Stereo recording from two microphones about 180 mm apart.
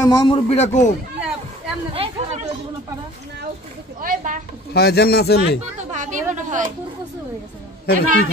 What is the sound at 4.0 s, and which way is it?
Speech, 50° right (ahead or behind).